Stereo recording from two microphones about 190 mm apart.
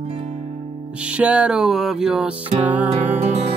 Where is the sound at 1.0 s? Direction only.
5° right (ahead or behind).